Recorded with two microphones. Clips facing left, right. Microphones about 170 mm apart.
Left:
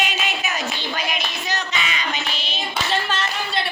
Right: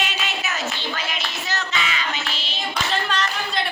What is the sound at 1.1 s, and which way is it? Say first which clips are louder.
Child singing: left 2 dB; 15° left (ahead or behind).